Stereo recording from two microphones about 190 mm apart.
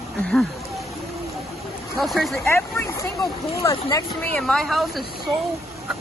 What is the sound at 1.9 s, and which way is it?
Speech, centre (ahead or behind).